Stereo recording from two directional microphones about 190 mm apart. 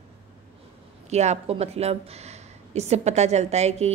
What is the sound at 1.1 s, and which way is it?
Speech, 35° right (ahead or behind).